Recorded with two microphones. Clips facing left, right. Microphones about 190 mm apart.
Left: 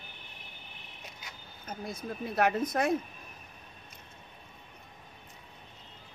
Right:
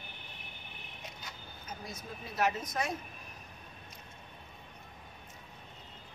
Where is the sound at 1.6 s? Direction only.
55° left (ahead or behind).